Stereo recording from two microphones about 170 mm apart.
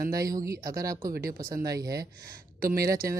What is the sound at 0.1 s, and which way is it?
Speech, 20° right (ahead or behind).